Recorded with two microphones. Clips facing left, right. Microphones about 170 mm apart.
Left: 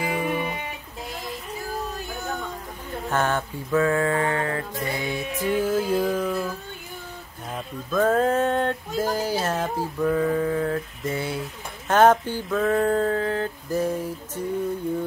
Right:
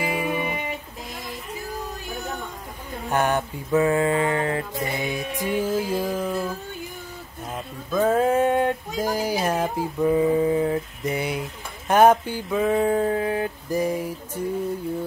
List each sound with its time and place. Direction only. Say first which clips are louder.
0.0 s music: even; 10° right (ahead or behind)
3.1 s speech: right 2 dB; 15° right (ahead or behind)
7.5 s speech: even; 10° right (ahead or behind)
11.9 s a sound: right 1 dB; 10° right (ahead or behind)